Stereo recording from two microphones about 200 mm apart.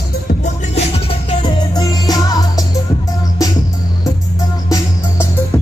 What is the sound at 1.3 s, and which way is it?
Music, 25° left (ahead or behind).